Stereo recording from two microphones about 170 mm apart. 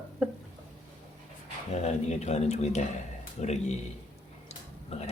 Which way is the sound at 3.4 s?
40° left (ahead or behind).